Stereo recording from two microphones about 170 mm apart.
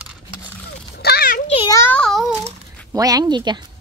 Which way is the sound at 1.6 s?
20° left (ahead or behind).